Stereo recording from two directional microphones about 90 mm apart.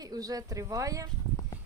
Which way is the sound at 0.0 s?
45° right (ahead or behind).